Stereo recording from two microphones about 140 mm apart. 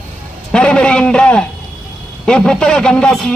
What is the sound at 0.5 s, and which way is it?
A man's voice, 5° left (ahead or behind).